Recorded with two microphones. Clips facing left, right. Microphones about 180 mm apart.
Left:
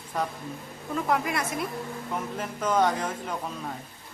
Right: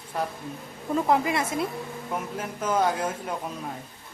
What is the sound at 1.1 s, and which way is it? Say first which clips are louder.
Speech: right 3 dB; 25° right (ahead or behind).